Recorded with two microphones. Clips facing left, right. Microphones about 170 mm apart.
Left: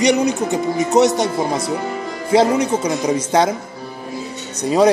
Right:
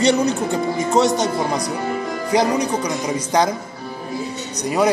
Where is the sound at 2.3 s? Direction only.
25° left (ahead or behind).